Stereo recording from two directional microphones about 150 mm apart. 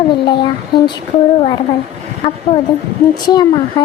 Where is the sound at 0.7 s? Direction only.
30° left (ahead or behind).